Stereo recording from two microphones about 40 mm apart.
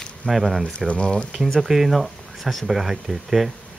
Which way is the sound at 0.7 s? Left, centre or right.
Left.